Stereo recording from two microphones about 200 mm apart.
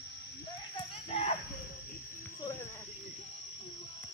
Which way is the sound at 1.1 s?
35° left (ahead or behind).